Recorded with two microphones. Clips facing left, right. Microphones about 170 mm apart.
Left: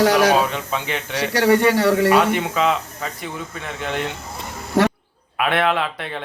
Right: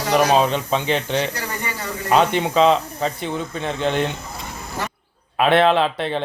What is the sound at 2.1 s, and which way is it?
Speech, 25° right (ahead or behind).